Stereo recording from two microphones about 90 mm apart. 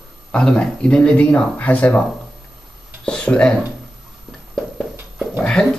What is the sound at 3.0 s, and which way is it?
Speech, 10° left (ahead or behind).